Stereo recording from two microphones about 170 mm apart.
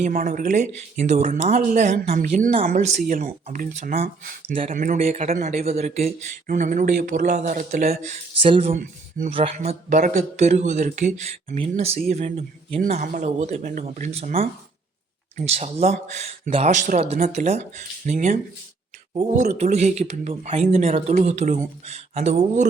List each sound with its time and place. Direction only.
0.0 s speech: 50° right (ahead or behind)
6.5 s speech: 50° right (ahead or behind)
8.4 s speech: 30° right (ahead or behind)
8.7 s speech: 50° right (ahead or behind)
11.5 s speech: 35° right (ahead or behind)